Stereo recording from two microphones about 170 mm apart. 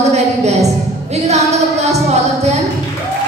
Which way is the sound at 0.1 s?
40° right (ahead or behind).